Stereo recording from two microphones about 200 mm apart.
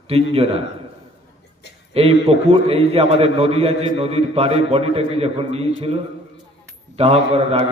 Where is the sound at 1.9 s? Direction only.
30° right (ahead or behind).